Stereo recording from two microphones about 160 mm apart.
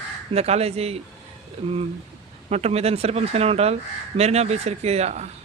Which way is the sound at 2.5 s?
40° right (ahead or behind).